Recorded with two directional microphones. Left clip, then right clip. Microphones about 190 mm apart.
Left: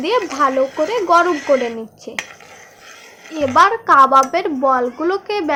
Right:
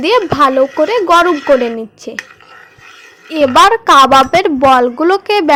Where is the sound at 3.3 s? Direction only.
40° right (ahead or behind).